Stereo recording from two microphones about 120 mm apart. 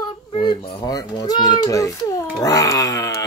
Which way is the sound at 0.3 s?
45° left (ahead or behind).